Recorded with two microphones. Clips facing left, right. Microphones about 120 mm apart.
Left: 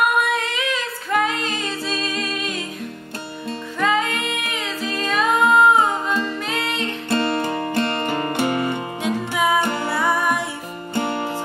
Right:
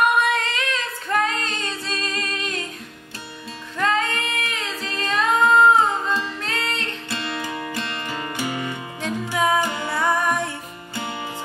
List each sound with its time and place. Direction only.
0.2 s music: 5° left (ahead or behind)
3.8 s music: 5° left (ahead or behind)
7.1 s music: 50° left (ahead or behind)
9.0 s music: 5° left (ahead or behind)
9.6 s music: 55° left (ahead or behind)
9.9 s music: 5° left (ahead or behind)
11.0 s music: 55° left (ahead or behind)